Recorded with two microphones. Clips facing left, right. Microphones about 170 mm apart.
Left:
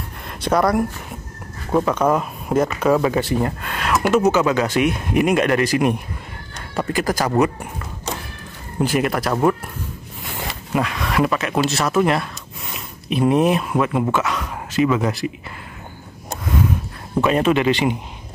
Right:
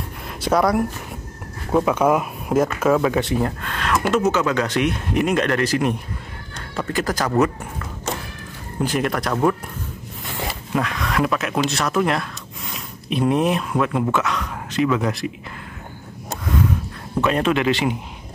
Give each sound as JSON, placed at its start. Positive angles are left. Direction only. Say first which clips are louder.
{"t": 0.4, "sound": "speech", "louder": "left 1 dB", "side_deg": 0}
{"t": 8.8, "sound": "speech", "louder": "left 2 dB", "side_deg": 5}
{"t": 10.7, "sound": "speech", "louder": "left 2 dB", "side_deg": 5}
{"t": 17.2, "sound": "speech", "louder": "left 2 dB", "side_deg": 5}